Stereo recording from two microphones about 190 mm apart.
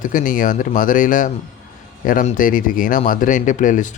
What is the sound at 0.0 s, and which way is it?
Speech, 45° left (ahead or behind).